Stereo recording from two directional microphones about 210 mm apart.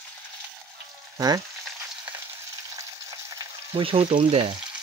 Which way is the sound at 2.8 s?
15° right (ahead or behind).